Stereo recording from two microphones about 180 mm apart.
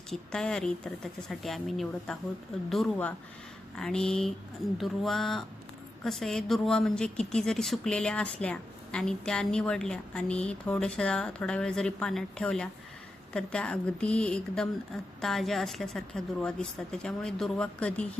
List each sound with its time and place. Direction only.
0.1 s speech: 5° left (ahead or behind)